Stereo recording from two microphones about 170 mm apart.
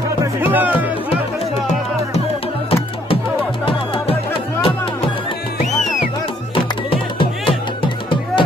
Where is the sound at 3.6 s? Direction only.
30° left (ahead or behind).